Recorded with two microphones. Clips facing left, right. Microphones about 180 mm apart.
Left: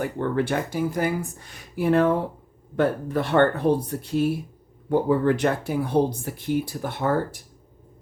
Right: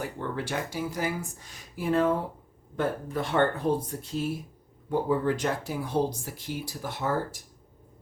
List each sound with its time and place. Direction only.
0.0 s speech: 55° left (ahead or behind)